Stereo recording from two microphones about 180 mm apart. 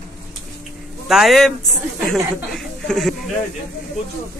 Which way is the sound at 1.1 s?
Centre (ahead or behind).